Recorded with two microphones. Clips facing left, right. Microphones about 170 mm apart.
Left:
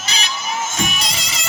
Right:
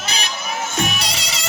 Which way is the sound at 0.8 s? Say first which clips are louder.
Right 1 dB; 65° right (ahead or behind).